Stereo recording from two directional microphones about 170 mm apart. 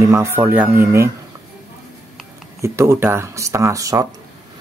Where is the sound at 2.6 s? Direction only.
15° right (ahead or behind).